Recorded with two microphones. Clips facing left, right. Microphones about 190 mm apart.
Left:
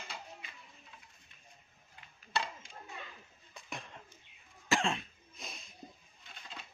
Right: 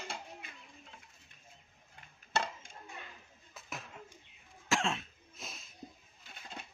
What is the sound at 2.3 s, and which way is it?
Dishes, 45° right (ahead or behind).